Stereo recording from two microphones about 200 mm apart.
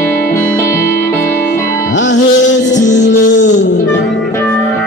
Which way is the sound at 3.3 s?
65° left (ahead or behind).